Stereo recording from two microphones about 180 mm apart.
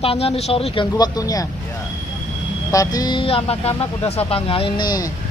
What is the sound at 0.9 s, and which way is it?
Speech, 20° left (ahead or behind).